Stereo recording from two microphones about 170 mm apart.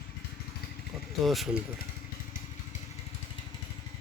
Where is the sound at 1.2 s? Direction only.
Centre (ahead or behind).